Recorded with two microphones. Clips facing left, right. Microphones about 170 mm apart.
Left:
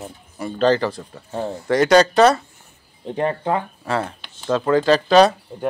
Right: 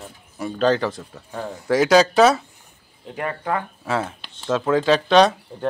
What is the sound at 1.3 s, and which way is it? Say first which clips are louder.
Speech: left 5 dB; 25° left (ahead or behind).